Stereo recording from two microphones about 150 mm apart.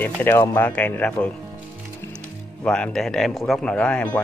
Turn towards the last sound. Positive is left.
turn(degrees=10)  # may be behind; listen again after turning